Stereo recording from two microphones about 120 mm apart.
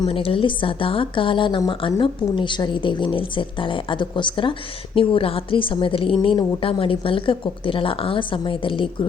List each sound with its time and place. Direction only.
0.1 s a woman's voice: 50° left (ahead or behind)